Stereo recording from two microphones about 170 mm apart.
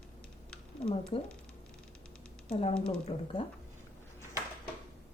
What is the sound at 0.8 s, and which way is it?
Speech, 35° left (ahead or behind).